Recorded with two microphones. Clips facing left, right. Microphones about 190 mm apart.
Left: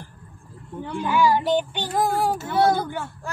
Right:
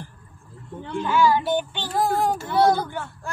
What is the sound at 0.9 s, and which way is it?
Child singing, 15° left (ahead or behind).